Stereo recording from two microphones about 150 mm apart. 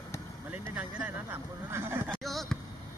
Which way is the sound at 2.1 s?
Centre (ahead or behind).